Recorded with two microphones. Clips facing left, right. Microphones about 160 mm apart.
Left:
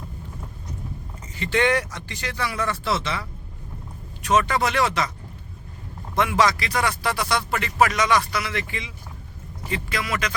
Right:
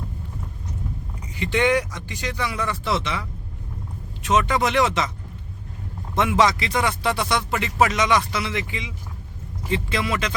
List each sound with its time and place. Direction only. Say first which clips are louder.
1.4 s speech: right 1 dB; 15° right (ahead or behind)
6.1 s speech: right 1 dB; 20° right (ahead or behind)